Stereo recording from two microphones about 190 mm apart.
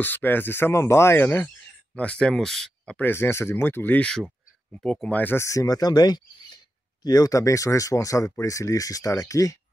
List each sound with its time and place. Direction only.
0.0 s speech: 10° left (ahead or behind)